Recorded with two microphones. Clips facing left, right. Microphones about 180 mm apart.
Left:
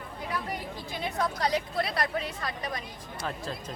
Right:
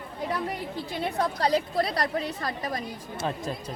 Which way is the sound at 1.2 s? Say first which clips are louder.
Right 3 dB; 30° right (ahead or behind).